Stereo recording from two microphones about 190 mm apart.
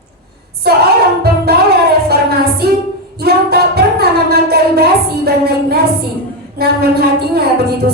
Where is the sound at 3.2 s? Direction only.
55° right (ahead or behind).